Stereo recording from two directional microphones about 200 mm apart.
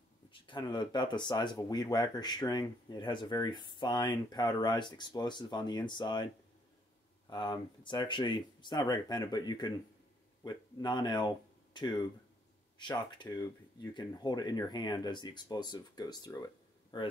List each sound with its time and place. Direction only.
0.3 s speech: 20° left (ahead or behind)
7.2 s speech: 20° left (ahead or behind)